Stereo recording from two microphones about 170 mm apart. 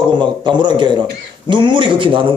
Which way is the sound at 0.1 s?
25° right (ahead or behind).